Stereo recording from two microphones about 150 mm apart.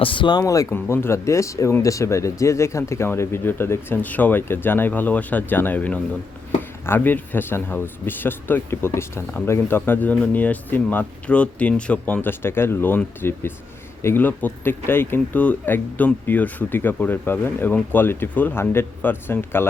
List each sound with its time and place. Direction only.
0.0 s speech: 35° left (ahead or behind); by 19.6 s 15° left (ahead or behind)